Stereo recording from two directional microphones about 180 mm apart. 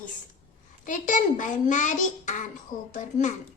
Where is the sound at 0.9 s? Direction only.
45° left (ahead or behind).